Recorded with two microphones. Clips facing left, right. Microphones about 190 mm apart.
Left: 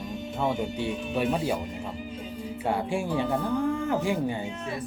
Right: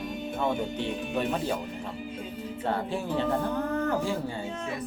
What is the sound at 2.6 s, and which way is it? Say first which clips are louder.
Speech: left 2 dB; 10° left (ahead or behind).